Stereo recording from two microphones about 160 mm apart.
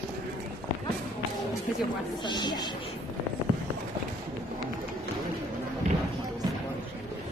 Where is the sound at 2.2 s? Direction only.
25° left (ahead or behind).